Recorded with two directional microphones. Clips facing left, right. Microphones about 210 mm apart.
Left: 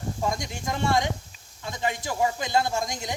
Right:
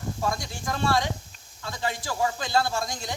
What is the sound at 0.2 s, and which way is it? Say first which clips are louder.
Speech: left 1 dB; 20° left (ahead or behind).